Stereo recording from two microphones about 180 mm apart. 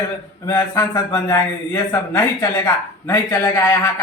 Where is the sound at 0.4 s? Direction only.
15° left (ahead or behind).